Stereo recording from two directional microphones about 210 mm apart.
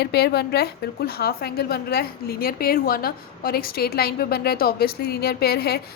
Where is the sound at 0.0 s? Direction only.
50° left (ahead or behind).